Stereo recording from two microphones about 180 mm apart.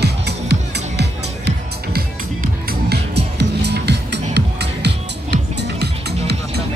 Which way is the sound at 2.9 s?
70° right (ahead or behind).